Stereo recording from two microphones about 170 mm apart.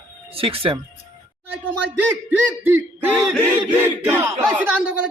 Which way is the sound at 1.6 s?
10° right (ahead or behind).